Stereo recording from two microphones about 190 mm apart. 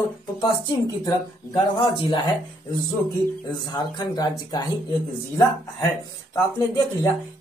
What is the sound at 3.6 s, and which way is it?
Speech, 20° left (ahead or behind).